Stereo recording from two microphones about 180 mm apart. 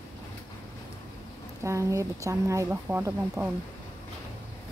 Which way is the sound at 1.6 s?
15° right (ahead or behind).